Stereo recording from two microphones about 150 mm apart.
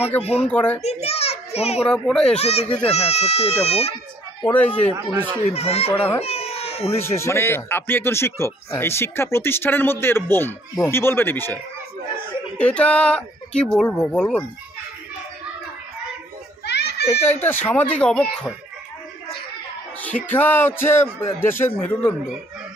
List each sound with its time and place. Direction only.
0.2 s speech: 45° left (ahead or behind)
0.5 s speech: 10° left (ahead or behind)
0.8 s a sound: 45° left (ahead or behind)
1.9 s speech: 5° left (ahead or behind)
2.3 s speech: 45° left (ahead or behind)
4.4 s speech: 10° left (ahead or behind)
5.5 s speech: 45° left (ahead or behind)
6.2 s baby cry: 45° left (ahead or behind)
6.9 s speech: 15° left (ahead or behind)
16.6 s children playing: 90° left
17.3 s speech: 15° left (ahead or behind)
20.2 s speech: 10° left (ahead or behind)